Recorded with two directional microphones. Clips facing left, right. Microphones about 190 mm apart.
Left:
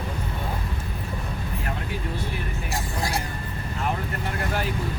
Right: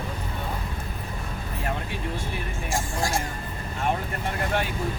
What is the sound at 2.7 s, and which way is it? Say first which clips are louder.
Speech: right 2 dB; 45° right (ahead or behind).